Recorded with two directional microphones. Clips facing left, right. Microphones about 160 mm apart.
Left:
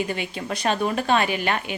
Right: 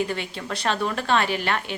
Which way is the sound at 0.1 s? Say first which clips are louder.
Left 1 dB; 15° left (ahead or behind).